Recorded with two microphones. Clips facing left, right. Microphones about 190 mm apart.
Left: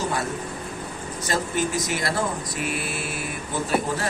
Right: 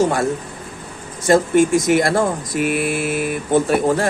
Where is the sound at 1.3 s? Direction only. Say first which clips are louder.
Right 12 dB; 50° right (ahead or behind).